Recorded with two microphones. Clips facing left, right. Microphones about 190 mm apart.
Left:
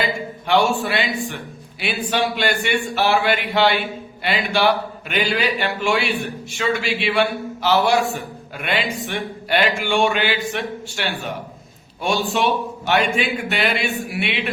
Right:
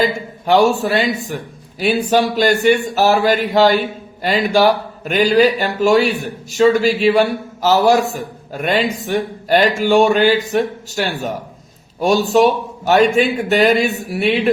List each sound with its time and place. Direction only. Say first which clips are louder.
0.0 s a man's voice: right 6 dB; 40° right (ahead or behind)